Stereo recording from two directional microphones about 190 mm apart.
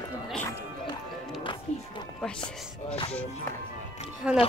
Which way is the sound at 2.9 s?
35° left (ahead or behind).